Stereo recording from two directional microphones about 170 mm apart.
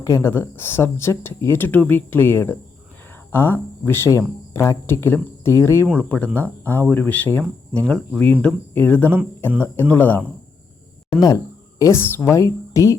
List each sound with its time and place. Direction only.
0.0 s speech: 15° left (ahead or behind)
11.8 s speech: 15° left (ahead or behind)